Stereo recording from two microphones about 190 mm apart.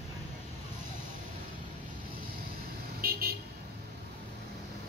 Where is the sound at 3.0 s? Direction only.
50° right (ahead or behind).